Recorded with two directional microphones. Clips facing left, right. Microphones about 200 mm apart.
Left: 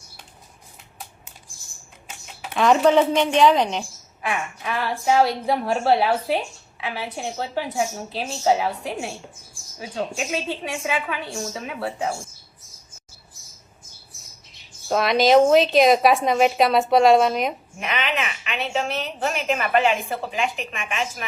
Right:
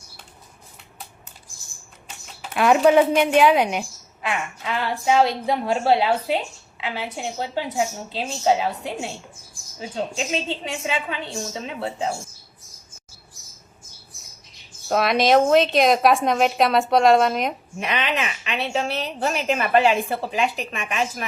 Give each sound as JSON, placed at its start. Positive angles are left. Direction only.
{"t": 2.6, "sound": "a woman's voice", "side_deg": -5}
{"t": 4.3, "sound": "a woman's voice", "side_deg": -20}
{"t": 14.8, "sound": "a woman's voice", "side_deg": 0}
{"t": 17.7, "sound": "a woman's voice", "side_deg": -35}